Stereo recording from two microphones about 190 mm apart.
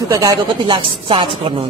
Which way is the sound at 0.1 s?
20° right (ahead or behind).